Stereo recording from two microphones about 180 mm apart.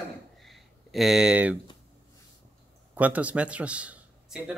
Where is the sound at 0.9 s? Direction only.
Centre (ahead or behind).